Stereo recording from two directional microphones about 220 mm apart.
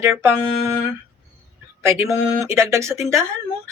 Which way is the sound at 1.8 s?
15° right (ahead or behind).